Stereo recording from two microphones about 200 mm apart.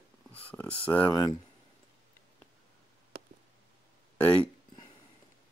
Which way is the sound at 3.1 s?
50° right (ahead or behind).